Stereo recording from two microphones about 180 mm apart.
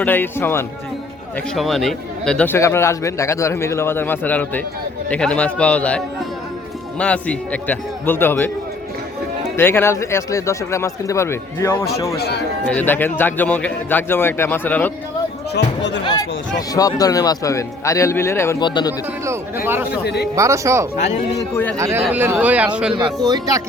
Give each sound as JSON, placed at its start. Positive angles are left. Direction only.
{"t": 0.0, "sound": "a man's voice", "side_deg": 10}
{"t": 1.5, "sound": "a man's voice", "side_deg": 0}
{"t": 7.0, "sound": "a man's voice", "side_deg": 5}
{"t": 9.6, "sound": "a man's voice", "side_deg": 10}
{"t": 12.1, "sound": "speech", "side_deg": 60}
{"t": 12.6, "sound": "a man's voice", "side_deg": 10}
{"t": 15.5, "sound": "speech", "side_deg": 70}
{"t": 16.7, "sound": "a man's voice", "side_deg": 20}
{"t": 18.6, "sound": "speech", "side_deg": 25}
{"t": 20.3, "sound": "speech", "side_deg": -15}
{"t": 21.5, "sound": "a man's voice", "side_deg": 10}
{"t": 21.8, "sound": "speech", "side_deg": -15}
{"t": 23.2, "sound": "speech", "side_deg": -20}